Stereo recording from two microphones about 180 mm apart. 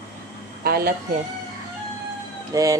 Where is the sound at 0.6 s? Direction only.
55° right (ahead or behind).